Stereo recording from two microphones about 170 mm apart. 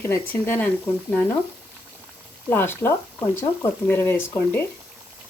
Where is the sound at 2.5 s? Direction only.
10° left (ahead or behind).